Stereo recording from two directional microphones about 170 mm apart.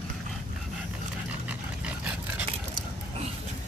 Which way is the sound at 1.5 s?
10° right (ahead or behind).